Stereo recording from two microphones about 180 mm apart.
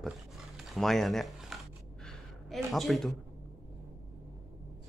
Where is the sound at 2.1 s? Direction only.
Centre (ahead or behind).